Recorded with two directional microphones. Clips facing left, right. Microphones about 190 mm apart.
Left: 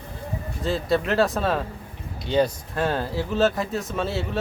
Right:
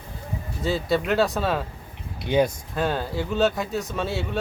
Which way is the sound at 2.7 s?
Centre (ahead or behind).